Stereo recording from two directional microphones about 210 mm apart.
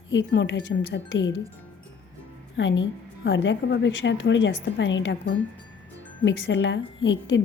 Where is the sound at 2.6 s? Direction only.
60° left (ahead or behind).